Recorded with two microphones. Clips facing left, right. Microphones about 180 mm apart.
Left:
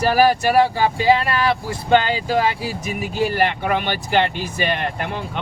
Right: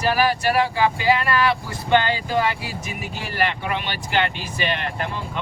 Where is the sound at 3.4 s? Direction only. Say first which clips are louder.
Left 5 dB; 50° left (ahead or behind).